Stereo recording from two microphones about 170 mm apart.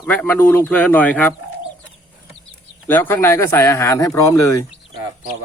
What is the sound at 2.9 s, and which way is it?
Speech, 10° left (ahead or behind).